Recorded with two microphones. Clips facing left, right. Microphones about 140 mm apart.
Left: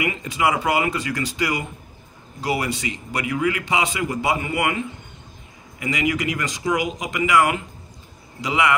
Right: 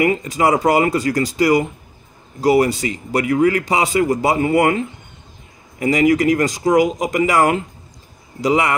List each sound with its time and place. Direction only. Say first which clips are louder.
0.0 s a man's voice: right 6 dB; 40° right (ahead or behind)